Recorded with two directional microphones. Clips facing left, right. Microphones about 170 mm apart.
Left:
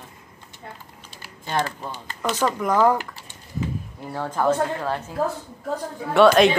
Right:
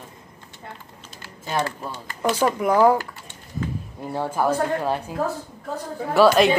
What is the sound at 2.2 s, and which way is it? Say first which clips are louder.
Speech: right 2 dB; 10° right (ahead or behind).